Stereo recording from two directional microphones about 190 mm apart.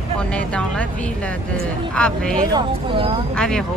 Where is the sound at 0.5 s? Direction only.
5° left (ahead or behind).